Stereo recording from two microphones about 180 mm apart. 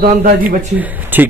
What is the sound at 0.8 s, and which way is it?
Speech, 10° right (ahead or behind).